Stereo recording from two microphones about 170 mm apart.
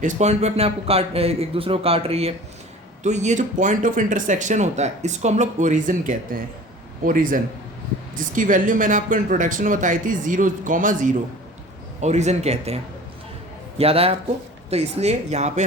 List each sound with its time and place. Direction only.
0.0 s a man's voice: 45° right (ahead or behind)